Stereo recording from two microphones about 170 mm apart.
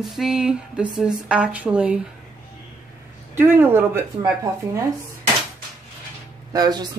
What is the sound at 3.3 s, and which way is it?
Speech, 10° right (ahead or behind).